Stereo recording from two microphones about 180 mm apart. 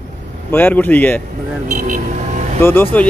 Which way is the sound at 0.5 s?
10° left (ahead or behind).